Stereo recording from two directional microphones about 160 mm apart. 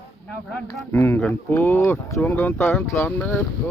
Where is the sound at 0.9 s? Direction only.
10° left (ahead or behind).